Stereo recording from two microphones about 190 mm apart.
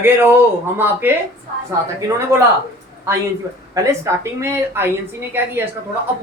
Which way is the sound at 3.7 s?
15° right (ahead or behind).